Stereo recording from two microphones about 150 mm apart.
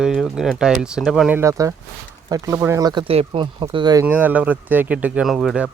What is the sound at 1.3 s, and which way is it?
Speech, 20° right (ahead or behind).